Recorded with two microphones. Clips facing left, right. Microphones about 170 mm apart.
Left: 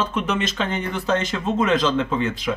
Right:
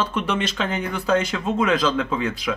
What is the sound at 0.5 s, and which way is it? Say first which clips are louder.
Speech: even; 10° right (ahead or behind).